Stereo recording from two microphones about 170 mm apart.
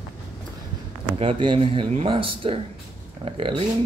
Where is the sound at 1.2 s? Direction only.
30° right (ahead or behind).